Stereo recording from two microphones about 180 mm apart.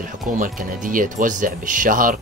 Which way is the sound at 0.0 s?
50° right (ahead or behind).